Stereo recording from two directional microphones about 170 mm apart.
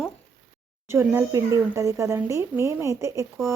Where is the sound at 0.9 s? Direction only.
15° right (ahead or behind).